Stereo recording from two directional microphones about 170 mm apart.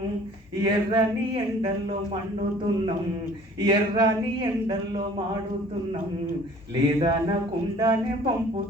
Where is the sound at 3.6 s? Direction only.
25° right (ahead or behind).